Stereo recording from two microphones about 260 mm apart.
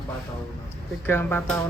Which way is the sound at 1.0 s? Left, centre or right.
Centre.